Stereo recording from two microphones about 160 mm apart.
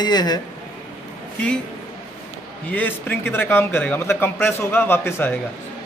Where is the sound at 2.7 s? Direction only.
10° left (ahead or behind).